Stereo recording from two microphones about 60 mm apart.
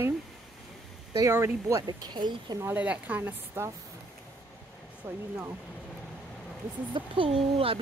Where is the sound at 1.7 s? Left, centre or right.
Right.